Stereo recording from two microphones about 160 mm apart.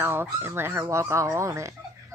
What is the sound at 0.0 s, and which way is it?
Speech, 15° right (ahead or behind).